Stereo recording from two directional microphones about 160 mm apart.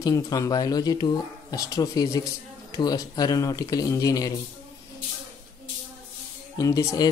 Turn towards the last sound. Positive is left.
turn(degrees=20)  # may be behind; listen again after turning